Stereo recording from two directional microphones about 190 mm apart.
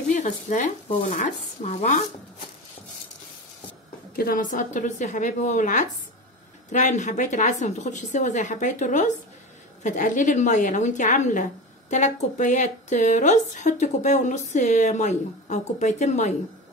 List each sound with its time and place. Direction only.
0.1 s a woman's voice: 40° left (ahead or behind)
4.1 s a woman's voice: 50° left (ahead or behind)